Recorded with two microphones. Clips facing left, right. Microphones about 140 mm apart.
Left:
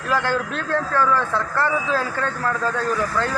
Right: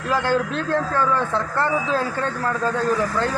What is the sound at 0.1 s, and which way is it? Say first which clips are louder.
Speech: right 1 dB; 20° right (ahead or behind).